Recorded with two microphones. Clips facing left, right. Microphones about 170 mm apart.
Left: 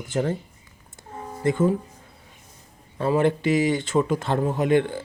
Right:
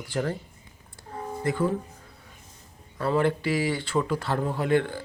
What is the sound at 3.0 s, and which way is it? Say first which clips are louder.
Speech: left 3 dB; 20° left (ahead or behind).